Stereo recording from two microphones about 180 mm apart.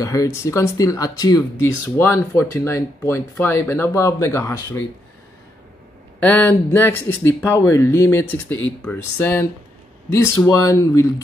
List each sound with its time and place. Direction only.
0.0 s speech: 20° left (ahead or behind)
6.1 s speech: 10° left (ahead or behind)